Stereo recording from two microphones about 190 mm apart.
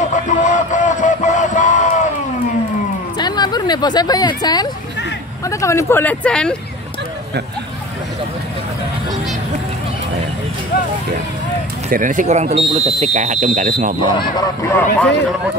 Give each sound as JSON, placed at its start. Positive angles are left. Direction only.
{"t": 0.1, "sound": "music", "side_deg": 40}
{"t": 3.2, "sound": "speech", "side_deg": 20}
{"t": 11.9, "sound": "speech", "side_deg": -45}
{"t": 14.1, "sound": "speech", "side_deg": 20}